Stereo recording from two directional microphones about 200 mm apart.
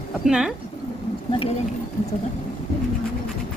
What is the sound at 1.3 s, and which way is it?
Speech, 30° left (ahead or behind).